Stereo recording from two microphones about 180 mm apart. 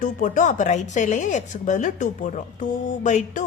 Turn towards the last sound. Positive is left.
turn(degrees=45)  # may be behind; listen again after turning